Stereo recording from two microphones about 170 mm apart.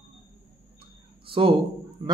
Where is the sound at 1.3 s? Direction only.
30° right (ahead or behind).